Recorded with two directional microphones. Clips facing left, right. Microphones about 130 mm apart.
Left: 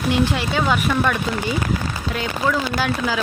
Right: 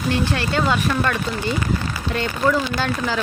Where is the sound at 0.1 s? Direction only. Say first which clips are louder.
Left 2 dB; 15° left (ahead or behind).